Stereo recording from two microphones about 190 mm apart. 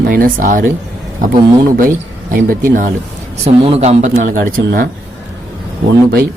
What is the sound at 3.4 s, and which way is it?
A man's voice, 35° right (ahead or behind).